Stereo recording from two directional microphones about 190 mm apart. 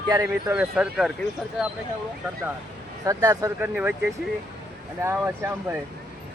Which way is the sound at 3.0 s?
15° right (ahead or behind).